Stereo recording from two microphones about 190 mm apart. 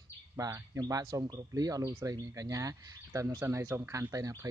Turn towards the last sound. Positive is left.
turn(degrees=-15)  # may be behind; listen again after turning